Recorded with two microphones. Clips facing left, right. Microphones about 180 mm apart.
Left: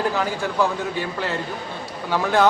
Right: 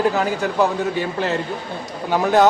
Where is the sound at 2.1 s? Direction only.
20° right (ahead or behind).